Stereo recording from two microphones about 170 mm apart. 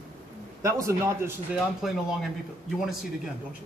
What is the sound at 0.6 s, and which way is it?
Speech, 15° right (ahead or behind).